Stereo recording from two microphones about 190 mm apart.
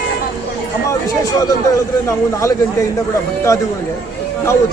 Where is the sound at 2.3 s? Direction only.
15° left (ahead or behind).